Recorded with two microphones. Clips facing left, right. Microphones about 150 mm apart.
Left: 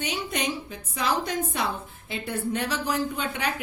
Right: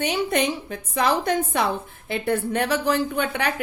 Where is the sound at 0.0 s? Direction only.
55° right (ahead or behind).